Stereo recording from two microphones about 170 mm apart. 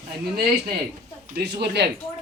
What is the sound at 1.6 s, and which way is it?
Speech, 75° right (ahead or behind).